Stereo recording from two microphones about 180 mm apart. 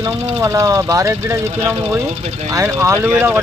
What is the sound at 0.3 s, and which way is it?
Speech, 15° right (ahead or behind).